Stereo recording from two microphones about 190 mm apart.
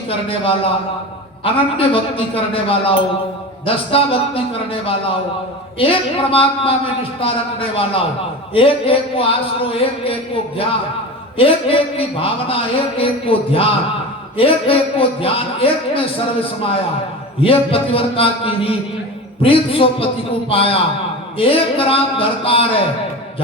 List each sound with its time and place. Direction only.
0.1 s a man's voice: 30° left (ahead or behind)